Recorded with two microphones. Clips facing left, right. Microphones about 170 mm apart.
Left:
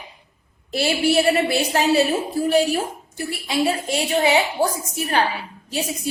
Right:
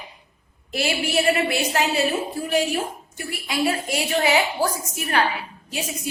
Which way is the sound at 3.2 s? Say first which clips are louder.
Left 2 dB; 25° left (ahead or behind).